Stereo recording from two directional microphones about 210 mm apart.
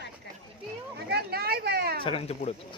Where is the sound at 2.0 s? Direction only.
25° left (ahead or behind).